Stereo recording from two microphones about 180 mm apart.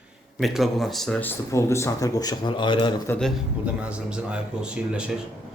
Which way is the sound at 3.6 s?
5° right (ahead or behind).